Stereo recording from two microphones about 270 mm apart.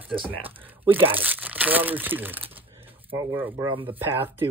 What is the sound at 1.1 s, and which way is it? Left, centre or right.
Speech, centre.